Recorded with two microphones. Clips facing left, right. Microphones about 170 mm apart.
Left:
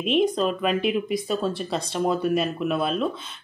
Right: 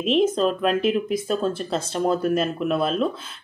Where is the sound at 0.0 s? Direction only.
Centre (ahead or behind).